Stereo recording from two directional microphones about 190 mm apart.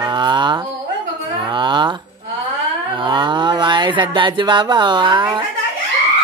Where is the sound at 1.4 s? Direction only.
25° right (ahead or behind).